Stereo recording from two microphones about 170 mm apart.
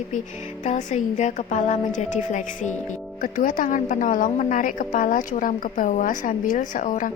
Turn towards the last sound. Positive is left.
turn(degrees=50)  # may be behind; listen again after turning